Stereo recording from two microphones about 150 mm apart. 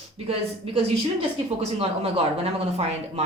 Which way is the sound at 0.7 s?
40° right (ahead or behind).